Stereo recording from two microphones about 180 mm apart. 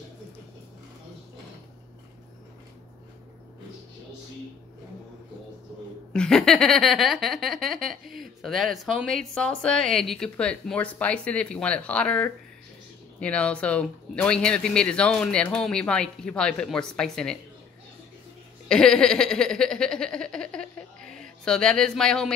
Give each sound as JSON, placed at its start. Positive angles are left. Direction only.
{"t": 6.1, "sound": "speech", "side_deg": 5}
{"t": 18.7, "sound": "speech", "side_deg": 5}
{"t": 21.0, "sound": "a sound", "side_deg": -50}
{"t": 21.5, "sound": "speech", "side_deg": 5}